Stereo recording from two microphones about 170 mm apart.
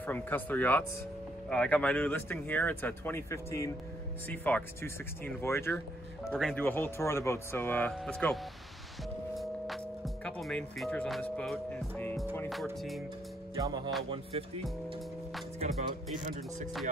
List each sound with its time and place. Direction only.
0.0 s speech: 10° left (ahead or behind)
9.4 s speech: centre (ahead or behind)
13.6 s music: 25° right (ahead or behind)